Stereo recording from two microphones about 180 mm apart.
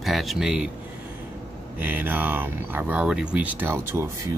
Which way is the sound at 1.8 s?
10° right (ahead or behind).